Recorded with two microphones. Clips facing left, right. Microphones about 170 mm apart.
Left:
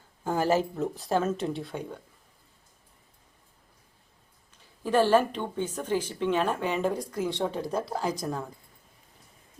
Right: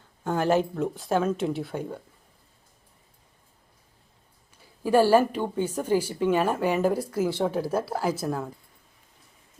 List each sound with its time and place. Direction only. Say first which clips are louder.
0.3 s speech: right 2 dB; 5° left (ahead or behind)
4.8 s speech: right 3 dB; 10° right (ahead or behind)